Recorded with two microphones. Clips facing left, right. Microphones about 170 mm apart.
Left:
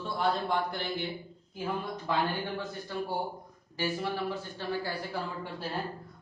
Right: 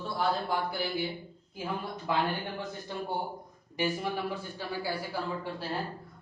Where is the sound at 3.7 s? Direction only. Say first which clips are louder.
Right 1 dB; 15° right (ahead or behind).